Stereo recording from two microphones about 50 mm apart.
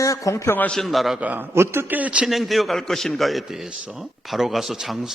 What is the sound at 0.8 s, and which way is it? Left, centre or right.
Speech, centre.